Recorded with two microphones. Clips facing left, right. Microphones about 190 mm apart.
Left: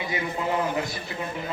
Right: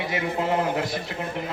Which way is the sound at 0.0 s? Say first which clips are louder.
Right 3 dB; 70° right (ahead or behind).